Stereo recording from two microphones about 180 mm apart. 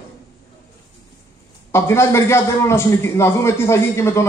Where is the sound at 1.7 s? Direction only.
15° left (ahead or behind).